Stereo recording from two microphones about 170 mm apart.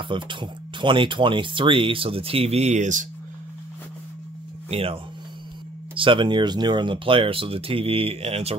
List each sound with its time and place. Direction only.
0.0 s speech: 30° right (ahead or behind); by 3.1 s 45° right (ahead or behind)
4.6 s speech: 35° right (ahead or behind)